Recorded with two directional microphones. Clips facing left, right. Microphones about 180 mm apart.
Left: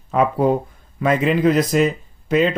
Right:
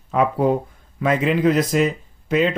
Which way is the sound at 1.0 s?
40° left (ahead or behind).